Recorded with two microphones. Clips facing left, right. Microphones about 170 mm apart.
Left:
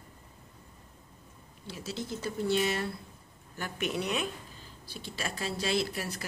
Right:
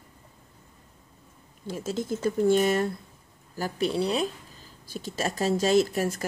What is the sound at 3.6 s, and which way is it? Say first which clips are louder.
Speech: right 7 dB; 35° right (ahead or behind).